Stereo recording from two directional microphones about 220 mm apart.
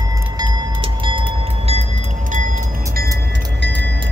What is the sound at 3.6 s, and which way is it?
Vehicle, 50° right (ahead or behind).